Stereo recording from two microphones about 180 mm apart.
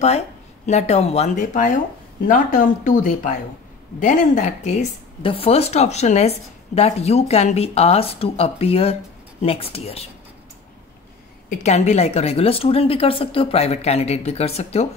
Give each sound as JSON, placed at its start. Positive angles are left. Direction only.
{"t": 0.7, "sound": "a woman's voice", "side_deg": 40}
{"t": 5.2, "sound": "a woman's voice", "side_deg": 30}
{"t": 11.4, "sound": "a woman's voice", "side_deg": 40}